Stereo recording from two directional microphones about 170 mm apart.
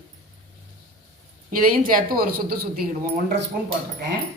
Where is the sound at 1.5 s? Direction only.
60° right (ahead or behind).